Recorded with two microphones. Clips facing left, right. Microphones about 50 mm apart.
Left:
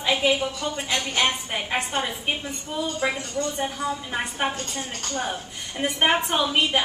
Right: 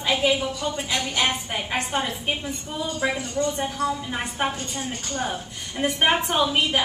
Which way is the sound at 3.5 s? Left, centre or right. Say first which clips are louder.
Right 2 dB; centre.